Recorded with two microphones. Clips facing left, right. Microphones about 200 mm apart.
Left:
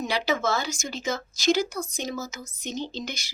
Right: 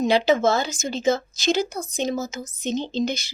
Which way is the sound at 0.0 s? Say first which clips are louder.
Right 8 dB; 20° right (ahead or behind).